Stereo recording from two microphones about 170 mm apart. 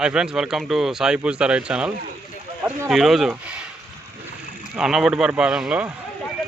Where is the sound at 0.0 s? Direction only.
5° right (ahead or behind).